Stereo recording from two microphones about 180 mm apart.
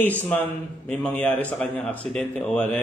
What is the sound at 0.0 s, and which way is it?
A man's voice, 10° left (ahead or behind).